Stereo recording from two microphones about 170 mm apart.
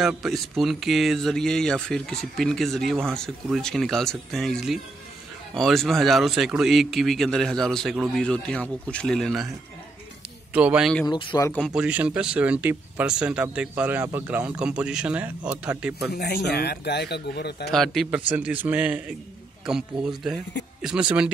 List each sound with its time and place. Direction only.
0.0 s speech: centre (ahead or behind)
10.5 s speech: 5° right (ahead or behind)
11.1 s speech: 30° left (ahead or behind)
11.6 s speech: 5° right (ahead or behind)
16.1 s a man's voice: 70° left (ahead or behind)
17.6 s speech: centre (ahead or behind)